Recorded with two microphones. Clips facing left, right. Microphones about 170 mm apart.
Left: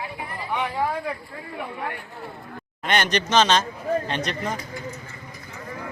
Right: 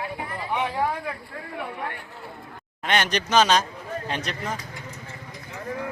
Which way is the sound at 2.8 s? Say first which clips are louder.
Left 1 dB; centre (ahead or behind).